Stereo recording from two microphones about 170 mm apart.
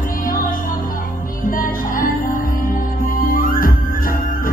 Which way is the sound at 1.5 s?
55° left (ahead or behind).